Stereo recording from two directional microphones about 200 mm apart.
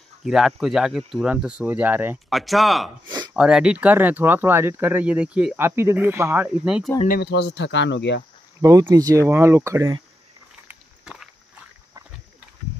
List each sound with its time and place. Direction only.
0.2 s speech: centre (ahead or behind)
7.1 s speech: 55° left (ahead or behind)
8.5 s speech: 15° right (ahead or behind)
10.7 s a sound: 5° right (ahead or behind)